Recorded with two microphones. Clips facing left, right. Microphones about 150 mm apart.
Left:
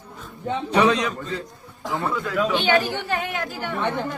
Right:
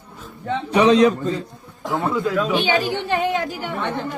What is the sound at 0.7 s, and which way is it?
Speech, 15° right (ahead or behind).